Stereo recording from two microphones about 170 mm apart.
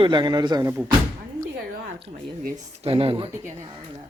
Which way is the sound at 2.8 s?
35° right (ahead or behind).